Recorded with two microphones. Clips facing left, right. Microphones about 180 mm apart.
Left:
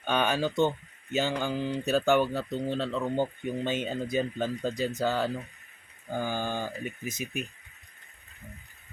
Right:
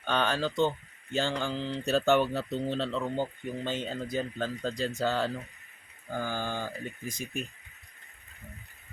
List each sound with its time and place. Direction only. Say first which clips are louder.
0.0 s speech: left 2 dB; 10° left (ahead or behind)
1.8 s speech: even; centre (ahead or behind)
3.2 s speech: left 3 dB; 15° left (ahead or behind)
6.1 s speech: left 2 dB; 15° left (ahead or behind)